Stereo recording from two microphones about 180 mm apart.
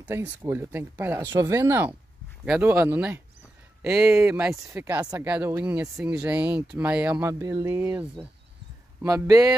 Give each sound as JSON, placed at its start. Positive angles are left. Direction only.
{"t": 0.0, "sound": "speech", "side_deg": -10}
{"t": 9.0, "sound": "speech", "side_deg": -20}